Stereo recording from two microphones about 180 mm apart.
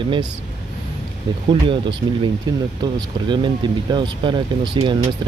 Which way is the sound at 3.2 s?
25° right (ahead or behind).